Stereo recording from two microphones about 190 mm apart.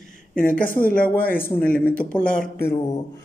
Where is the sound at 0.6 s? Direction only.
45° left (ahead or behind).